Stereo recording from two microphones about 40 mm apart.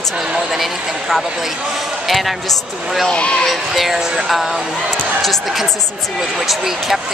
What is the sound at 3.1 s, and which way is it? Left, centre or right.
Speech, left.